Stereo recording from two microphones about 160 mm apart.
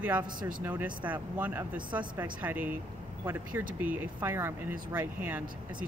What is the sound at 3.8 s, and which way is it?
Speech, 10° right (ahead or behind).